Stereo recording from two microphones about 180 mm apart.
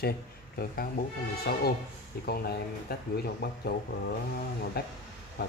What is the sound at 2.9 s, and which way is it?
Speech, 60° left (ahead or behind).